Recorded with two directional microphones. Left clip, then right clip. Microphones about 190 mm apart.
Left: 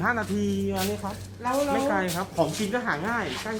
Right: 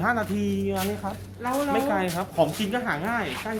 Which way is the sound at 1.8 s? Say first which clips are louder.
Even; 25° right (ahead or behind).